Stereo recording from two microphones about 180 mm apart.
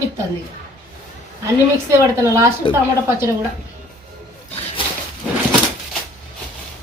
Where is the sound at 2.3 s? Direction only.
15° right (ahead or behind).